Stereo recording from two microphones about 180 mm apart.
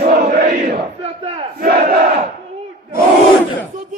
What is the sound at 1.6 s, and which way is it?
Battle cry, 50° right (ahead or behind).